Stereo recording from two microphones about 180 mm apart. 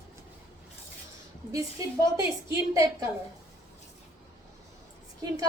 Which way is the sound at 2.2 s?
15° right (ahead or behind).